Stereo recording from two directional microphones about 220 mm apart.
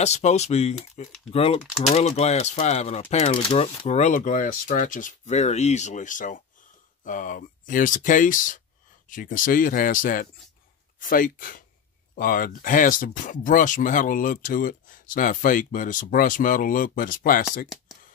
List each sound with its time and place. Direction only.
0.0 s speech: 30° left (ahead or behind)